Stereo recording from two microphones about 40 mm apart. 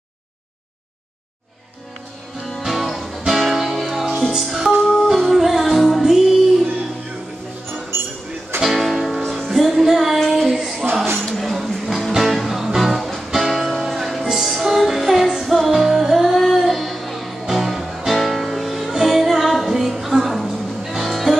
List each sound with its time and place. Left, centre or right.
2.4 s music: centre
8.6 s music: centre
10.5 s female singing: centre
11.1 s music: centre
11.4 s music: centre